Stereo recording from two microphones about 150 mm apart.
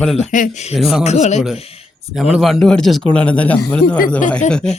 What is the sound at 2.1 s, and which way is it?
A man's voice, centre (ahead or behind).